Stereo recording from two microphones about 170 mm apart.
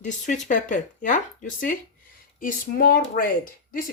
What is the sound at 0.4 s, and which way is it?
Speech, 50° left (ahead or behind).